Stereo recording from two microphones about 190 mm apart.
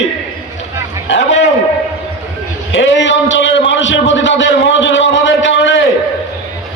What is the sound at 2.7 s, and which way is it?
Speech, 75° left (ahead or behind).